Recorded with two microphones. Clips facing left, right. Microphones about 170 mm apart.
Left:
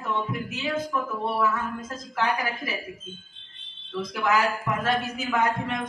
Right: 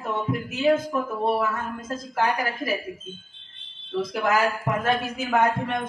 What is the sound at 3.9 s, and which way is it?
A man's voice, 50° right (ahead or behind).